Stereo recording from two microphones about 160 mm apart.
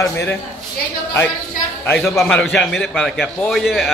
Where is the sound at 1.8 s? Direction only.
5° left (ahead or behind).